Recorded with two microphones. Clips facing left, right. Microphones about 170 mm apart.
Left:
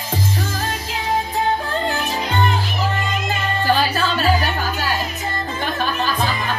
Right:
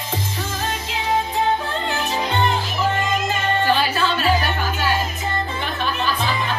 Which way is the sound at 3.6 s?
35° left (ahead or behind).